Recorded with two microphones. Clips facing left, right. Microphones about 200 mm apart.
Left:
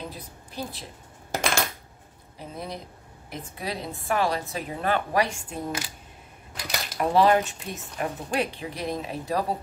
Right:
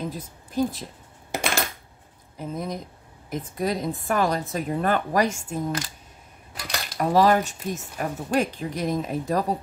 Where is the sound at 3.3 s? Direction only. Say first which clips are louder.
Right 7 dB; 45° right (ahead or behind).